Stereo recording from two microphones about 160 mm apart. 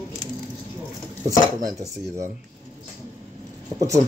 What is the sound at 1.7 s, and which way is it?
Speech, 20° right (ahead or behind).